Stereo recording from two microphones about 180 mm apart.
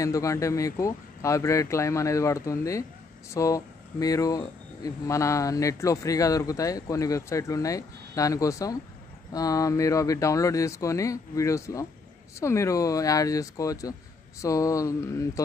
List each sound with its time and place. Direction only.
0.0 s speech: 15° left (ahead or behind)